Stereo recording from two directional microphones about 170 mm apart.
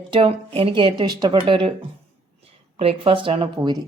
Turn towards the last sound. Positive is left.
turn(degrees=-25)  # may be behind; listen again after turning